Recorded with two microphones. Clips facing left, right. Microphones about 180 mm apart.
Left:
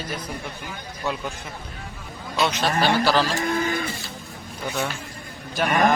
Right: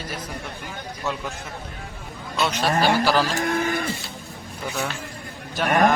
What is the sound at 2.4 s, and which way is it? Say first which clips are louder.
Speech: right 1 dB; 5° right (ahead or behind).